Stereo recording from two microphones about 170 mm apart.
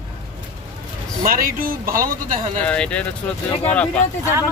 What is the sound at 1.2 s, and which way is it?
A man's voice, 55° right (ahead or behind).